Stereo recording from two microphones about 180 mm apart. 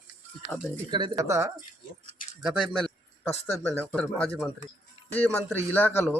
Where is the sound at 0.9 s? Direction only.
25° right (ahead or behind).